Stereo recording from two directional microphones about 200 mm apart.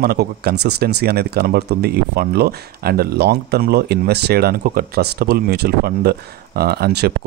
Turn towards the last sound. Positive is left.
turn(degrees=-55)  # may be behind; listen again after turning